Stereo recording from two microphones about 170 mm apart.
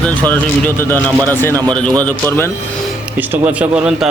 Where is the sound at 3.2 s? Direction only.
10° right (ahead or behind).